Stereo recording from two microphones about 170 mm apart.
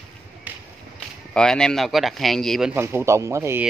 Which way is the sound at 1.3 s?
5° left (ahead or behind).